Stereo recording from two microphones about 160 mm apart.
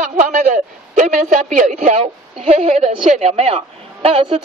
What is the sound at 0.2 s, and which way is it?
A man's voice, 50° right (ahead or behind).